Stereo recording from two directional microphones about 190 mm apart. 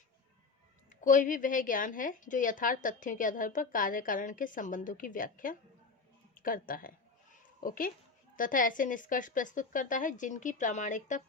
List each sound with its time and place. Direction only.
0.9 s a woman's voice: 45° left (ahead or behind)